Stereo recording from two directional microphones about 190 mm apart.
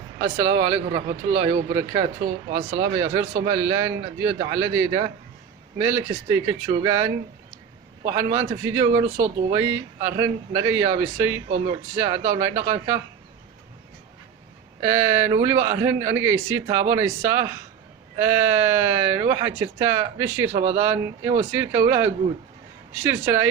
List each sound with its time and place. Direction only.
0.3 s speech: 15° right (ahead or behind)
14.8 s speech: 15° right (ahead or behind)